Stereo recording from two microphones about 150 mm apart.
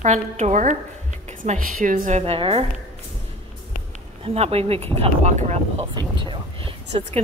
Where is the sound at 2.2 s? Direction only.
40° right (ahead or behind).